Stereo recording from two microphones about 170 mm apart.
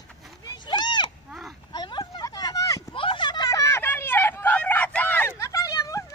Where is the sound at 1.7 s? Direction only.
25° left (ahead or behind).